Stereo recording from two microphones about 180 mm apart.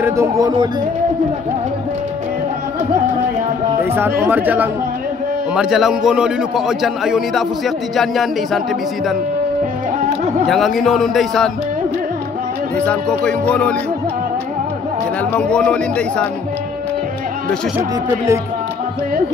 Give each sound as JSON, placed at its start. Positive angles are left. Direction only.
{"t": 0.0, "sound": "music", "side_deg": -15}
{"t": 3.8, "sound": "music", "side_deg": -10}
{"t": 5.5, "sound": "a man's voice", "side_deg": -5}
{"t": 10.4, "sound": "a man's voice", "side_deg": 0}
{"t": 13.2, "sound": "a man's voice", "side_deg": 5}
{"t": 15.3, "sound": "a man's voice", "side_deg": 5}
{"t": 17.7, "sound": "music", "side_deg": -15}